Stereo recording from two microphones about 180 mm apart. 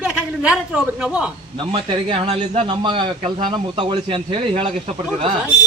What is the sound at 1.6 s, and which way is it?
A man's voice, 30° right (ahead or behind).